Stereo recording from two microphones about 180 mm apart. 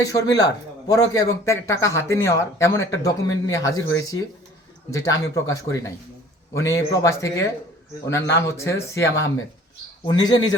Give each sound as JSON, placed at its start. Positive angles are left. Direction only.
{"t": 0.0, "sound": "speech", "side_deg": 20}